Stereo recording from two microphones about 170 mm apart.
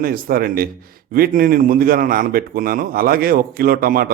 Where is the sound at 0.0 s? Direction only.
60° right (ahead or behind).